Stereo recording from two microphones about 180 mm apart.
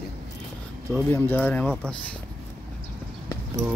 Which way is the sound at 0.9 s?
10° left (ahead or behind).